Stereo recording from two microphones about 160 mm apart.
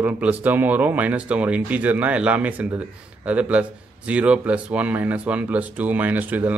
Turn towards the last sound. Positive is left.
turn(degrees=-10)  # may be behind; listen again after turning